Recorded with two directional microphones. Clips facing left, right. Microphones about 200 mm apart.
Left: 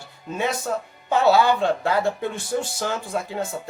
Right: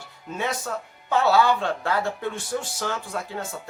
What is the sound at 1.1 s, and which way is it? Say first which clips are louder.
Speech: left 2 dB; 20° left (ahead or behind).